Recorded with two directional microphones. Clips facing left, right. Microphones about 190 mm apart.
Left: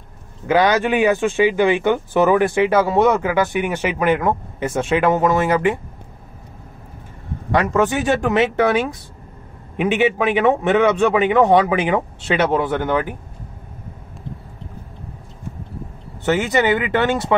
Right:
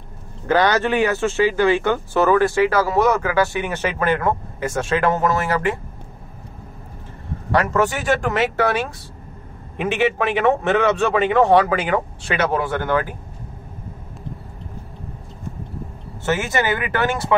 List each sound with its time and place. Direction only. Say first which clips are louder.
0.5 s speech: left 1 dB; 10° left (ahead or behind)
7.5 s a man's voice: left 2 dB; 20° left (ahead or behind)
16.3 s a man's voice: left 4 dB; 20° left (ahead or behind)